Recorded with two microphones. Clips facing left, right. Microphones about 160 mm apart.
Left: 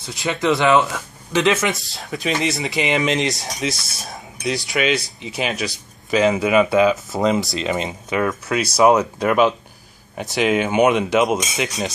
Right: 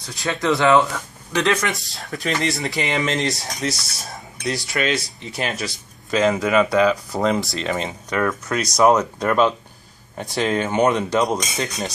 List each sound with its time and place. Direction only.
0.0 s speech: 20° left (ahead or behind)
1.7 s speech: centre (ahead or behind)
2.9 s speech: 15° left (ahead or behind)
3.2 s speech: centre (ahead or behind)
5.2 s speech: 15° left (ahead or behind)
6.1 s speech: 5° left (ahead or behind)
7.5 s speech: 15° left (ahead or behind)